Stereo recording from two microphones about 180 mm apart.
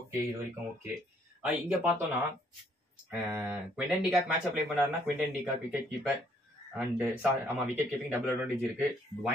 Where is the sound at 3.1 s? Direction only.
10° right (ahead or behind).